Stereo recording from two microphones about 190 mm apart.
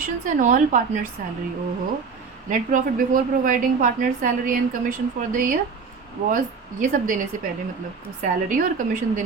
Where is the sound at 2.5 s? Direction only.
45° right (ahead or behind).